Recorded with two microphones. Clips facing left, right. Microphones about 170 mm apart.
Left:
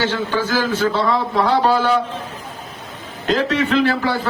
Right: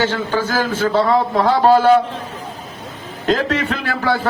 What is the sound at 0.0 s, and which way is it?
A man's voice, 45° right (ahead or behind).